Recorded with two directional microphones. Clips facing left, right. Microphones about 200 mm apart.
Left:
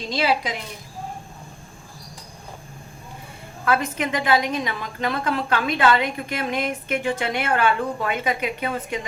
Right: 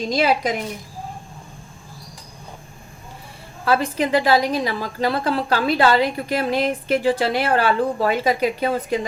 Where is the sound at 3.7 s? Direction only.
30° right (ahead or behind).